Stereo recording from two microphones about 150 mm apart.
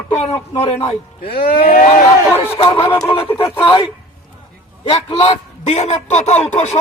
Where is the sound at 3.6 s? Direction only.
35° left (ahead or behind).